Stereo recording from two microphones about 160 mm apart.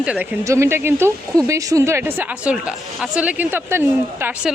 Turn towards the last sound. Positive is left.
turn(degrees=-15)  # may be behind; listen again after turning